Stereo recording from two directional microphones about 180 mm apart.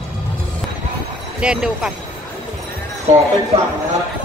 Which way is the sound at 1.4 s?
5° right (ahead or behind).